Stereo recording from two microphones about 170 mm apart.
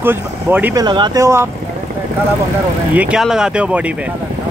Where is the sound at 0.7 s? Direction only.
25° right (ahead or behind).